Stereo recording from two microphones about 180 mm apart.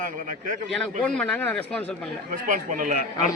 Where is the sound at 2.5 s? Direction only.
45° right (ahead or behind).